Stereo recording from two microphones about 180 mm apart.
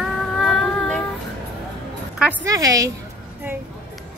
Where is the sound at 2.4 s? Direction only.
20° right (ahead or behind).